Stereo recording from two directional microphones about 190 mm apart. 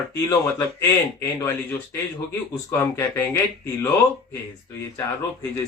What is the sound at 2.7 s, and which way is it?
Speech, 15° left (ahead or behind).